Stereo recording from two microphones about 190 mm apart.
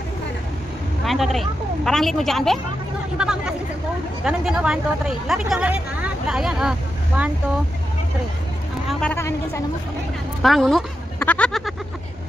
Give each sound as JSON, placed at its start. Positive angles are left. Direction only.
{"t": 1.0, "sound": "speech", "side_deg": 0}
{"t": 8.8, "sound": "speech", "side_deg": 10}
{"t": 10.4, "sound": "a sound", "side_deg": 0}